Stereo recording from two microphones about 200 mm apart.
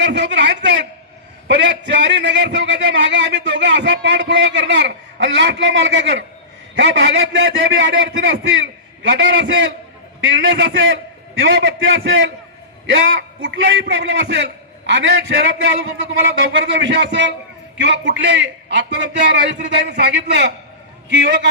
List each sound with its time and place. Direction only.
0.0 s a man's voice: 60° right (ahead or behind)